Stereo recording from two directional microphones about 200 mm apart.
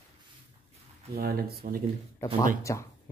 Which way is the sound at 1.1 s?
50° right (ahead or behind).